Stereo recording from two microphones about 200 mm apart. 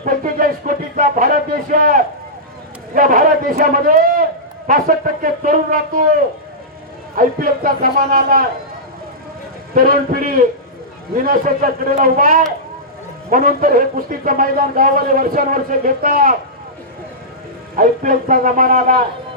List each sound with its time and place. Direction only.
0.0 s music: 45° right (ahead or behind)
0.9 s a sound: 40° right (ahead or behind)
2.9 s speech: 45° right (ahead or behind)
9.7 s speech: 45° right (ahead or behind)
17.7 s speech: 40° right (ahead or behind)